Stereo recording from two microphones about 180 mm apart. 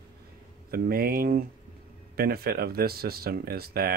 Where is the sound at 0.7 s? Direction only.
55° right (ahead or behind).